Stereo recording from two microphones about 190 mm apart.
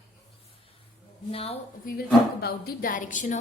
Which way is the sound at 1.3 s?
30° left (ahead or behind).